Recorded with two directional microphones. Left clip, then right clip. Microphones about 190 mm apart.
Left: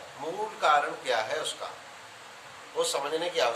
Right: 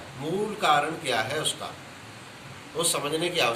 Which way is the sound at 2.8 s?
20° left (ahead or behind).